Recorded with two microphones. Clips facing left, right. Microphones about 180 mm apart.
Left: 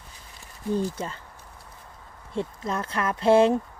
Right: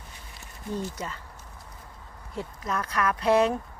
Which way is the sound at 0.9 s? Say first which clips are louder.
Left 3 dB; 30° left (ahead or behind).